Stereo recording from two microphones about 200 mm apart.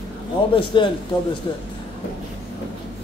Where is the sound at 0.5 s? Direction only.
25° left (ahead or behind).